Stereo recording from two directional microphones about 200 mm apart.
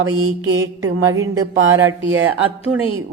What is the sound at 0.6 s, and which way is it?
Speech, 75° right (ahead or behind).